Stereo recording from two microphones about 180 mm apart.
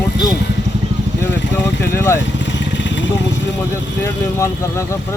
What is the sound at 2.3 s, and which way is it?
Vehicle, 90° left.